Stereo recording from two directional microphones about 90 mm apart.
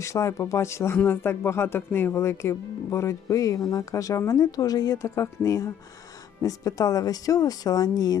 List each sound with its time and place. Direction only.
0.0 s speech: 35° left (ahead or behind)
5.0 s speech: 35° left (ahead or behind)